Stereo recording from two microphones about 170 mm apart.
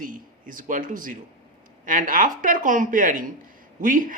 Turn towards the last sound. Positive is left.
turn(degrees=-50)  # may be behind; listen again after turning